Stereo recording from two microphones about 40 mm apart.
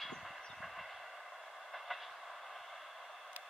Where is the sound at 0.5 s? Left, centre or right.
Centre.